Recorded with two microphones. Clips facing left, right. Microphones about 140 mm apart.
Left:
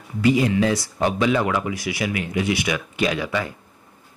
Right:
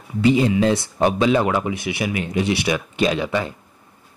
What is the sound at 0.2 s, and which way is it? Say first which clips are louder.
Speech: right 2 dB; 25° right (ahead or behind).